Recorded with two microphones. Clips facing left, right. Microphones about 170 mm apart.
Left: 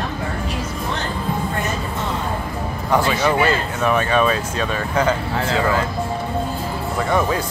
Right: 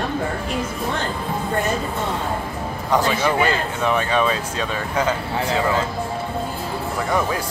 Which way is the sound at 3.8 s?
15° right (ahead or behind).